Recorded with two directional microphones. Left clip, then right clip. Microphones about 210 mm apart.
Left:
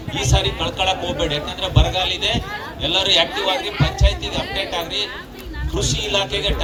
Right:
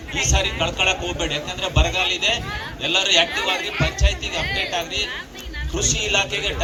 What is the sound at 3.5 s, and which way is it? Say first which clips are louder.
Speech: left 1 dB; 15° left (ahead or behind).